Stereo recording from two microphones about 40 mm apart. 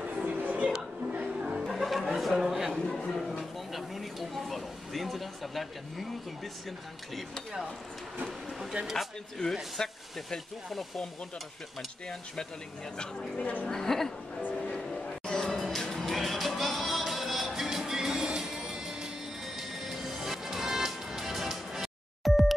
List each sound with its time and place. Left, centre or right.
0.1 s music: right
0.4 s music: right
1.2 s music: right
1.6 s music: centre
2.9 s a sound: centre
8.8 s speech: right
9.8 s speech: centre
12.9 s speech: left
14.8 s music: centre
19.4 s music: centre